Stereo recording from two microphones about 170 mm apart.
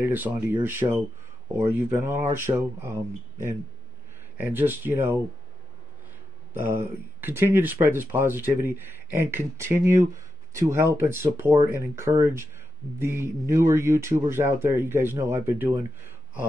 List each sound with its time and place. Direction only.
0.0 s speech: 10° right (ahead or behind)
6.6 s speech: 10° right (ahead or behind)